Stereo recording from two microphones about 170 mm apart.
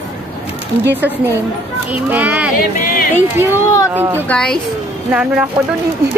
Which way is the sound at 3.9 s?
10° right (ahead or behind).